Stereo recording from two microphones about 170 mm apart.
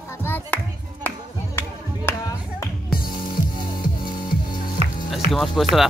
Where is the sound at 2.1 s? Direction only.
15° left (ahead or behind).